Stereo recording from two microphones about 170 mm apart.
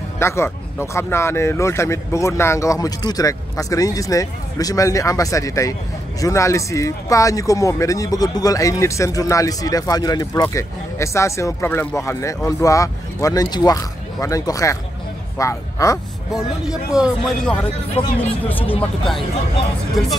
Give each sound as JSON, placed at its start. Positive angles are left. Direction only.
{"t": 0.2, "sound": "speech", "side_deg": 15}
{"t": 16.3, "sound": "speech", "side_deg": -5}
{"t": 18.0, "sound": "speech", "side_deg": 35}
{"t": 18.8, "sound": "speech", "side_deg": 0}